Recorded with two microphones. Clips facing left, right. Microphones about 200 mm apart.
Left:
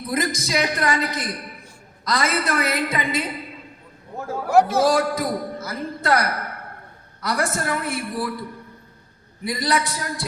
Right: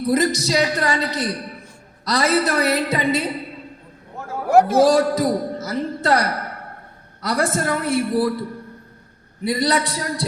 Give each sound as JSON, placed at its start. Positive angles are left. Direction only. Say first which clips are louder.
{"t": 0.4, "sound": "a woman's voice", "louder": "right 3 dB", "side_deg": -35}
{"t": 4.4, "sound": "speech", "louder": "right 3 dB", "side_deg": -55}
{"t": 4.8, "sound": "a man's voice", "louder": "right 4 dB", "side_deg": -40}